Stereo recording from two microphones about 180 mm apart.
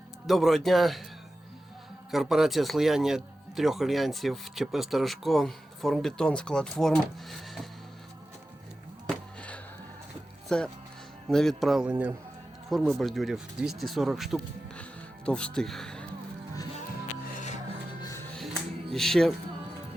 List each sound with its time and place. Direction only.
0.3 s speech: centre (ahead or behind)
2.0 s speech: centre (ahead or behind)
9.0 s a sound: 5° left (ahead or behind)
10.5 s speech: 5° left (ahead or behind)
16.9 s music: 50° left (ahead or behind)
18.0 s music: 15° left (ahead or behind)
18.3 s music: centre (ahead or behind)